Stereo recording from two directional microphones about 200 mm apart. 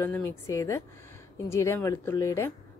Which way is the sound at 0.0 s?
10° left (ahead or behind).